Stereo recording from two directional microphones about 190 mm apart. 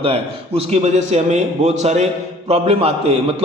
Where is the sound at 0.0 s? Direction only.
30° right (ahead or behind).